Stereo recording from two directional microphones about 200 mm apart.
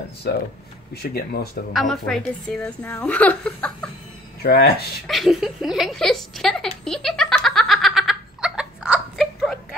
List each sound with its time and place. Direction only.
0.3 s speech: 50° left (ahead or behind)
1.7 s a woman's voice: centre (ahead or behind)
4.4 s speech: 50° left (ahead or behind)
5.0 s a sound: centre (ahead or behind)